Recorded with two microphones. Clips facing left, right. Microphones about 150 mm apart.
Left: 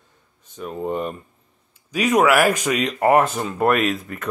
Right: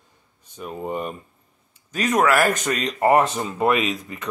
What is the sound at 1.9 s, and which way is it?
Speech, 10° left (ahead or behind).